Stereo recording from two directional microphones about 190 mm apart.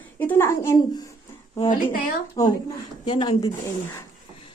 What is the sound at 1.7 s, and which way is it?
Speech, 45° left (ahead or behind).